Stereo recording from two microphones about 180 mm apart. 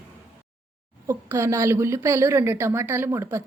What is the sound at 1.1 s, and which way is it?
A woman's voice, 15° right (ahead or behind).